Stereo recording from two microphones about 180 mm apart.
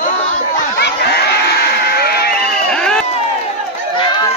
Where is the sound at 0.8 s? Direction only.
65° left (ahead or behind).